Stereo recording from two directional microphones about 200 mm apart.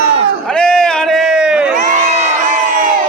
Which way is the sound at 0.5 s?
5° left (ahead or behind).